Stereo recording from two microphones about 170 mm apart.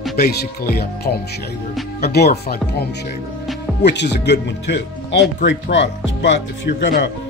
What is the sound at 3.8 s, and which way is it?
Speech, 90° left.